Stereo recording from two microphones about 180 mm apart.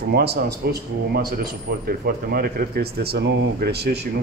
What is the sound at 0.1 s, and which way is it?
A man's voice, 65° right (ahead or behind).